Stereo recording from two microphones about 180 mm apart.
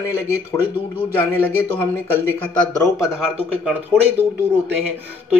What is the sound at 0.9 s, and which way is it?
Speech, 10° left (ahead or behind).